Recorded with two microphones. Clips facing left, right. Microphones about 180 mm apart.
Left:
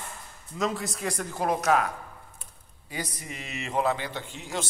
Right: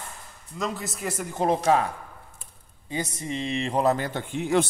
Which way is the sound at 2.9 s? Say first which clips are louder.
Right 6 dB; 25° right (ahead or behind).